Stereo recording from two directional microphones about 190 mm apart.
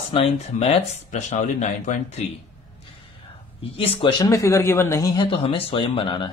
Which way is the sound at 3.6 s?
30° left (ahead or behind).